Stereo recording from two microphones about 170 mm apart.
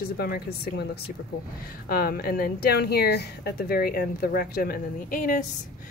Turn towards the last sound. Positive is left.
turn(degrees=50)  # may be behind; listen again after turning